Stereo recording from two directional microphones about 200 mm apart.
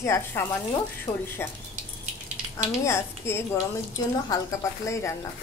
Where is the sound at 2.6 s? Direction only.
15° left (ahead or behind).